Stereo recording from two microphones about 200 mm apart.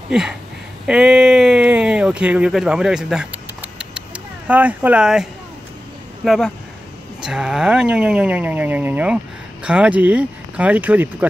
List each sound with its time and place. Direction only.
0.1 s speech: 5° right (ahead or behind)